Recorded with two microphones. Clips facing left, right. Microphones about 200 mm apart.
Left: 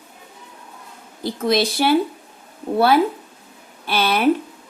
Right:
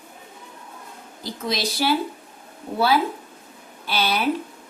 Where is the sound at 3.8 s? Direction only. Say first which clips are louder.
Left 4 dB; 55° left (ahead or behind).